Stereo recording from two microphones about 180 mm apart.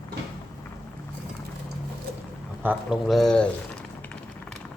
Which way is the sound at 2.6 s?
Centre (ahead or behind).